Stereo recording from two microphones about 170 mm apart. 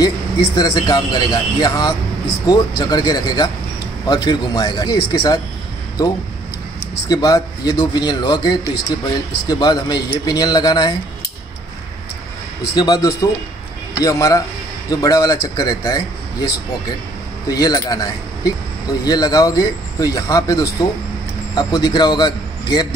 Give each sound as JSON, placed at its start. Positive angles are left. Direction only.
{"t": 0.6, "sound": "speech", "side_deg": 25}
{"t": 12.7, "sound": "a man's voice", "side_deg": 25}